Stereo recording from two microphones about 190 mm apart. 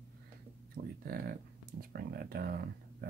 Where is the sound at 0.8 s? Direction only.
55° right (ahead or behind).